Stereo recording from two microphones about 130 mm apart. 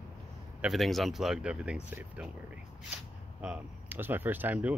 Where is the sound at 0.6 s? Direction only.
Centre (ahead or behind).